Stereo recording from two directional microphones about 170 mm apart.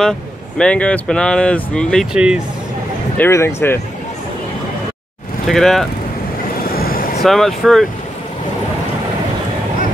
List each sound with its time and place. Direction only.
0.6 s speech: 5° left (ahead or behind)
2.1 s speech: 5° right (ahead or behind)
3.2 s speech: 15° left (ahead or behind)
5.5 s speech: centre (ahead or behind)
6.5 s vehicle: 60° left (ahead or behind)
7.2 s speech: centre (ahead or behind)